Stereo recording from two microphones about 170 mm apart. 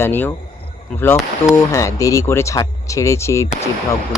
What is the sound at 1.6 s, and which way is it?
Speech, 20° left (ahead or behind).